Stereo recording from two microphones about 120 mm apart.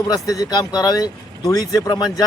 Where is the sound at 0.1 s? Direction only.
30° left (ahead or behind).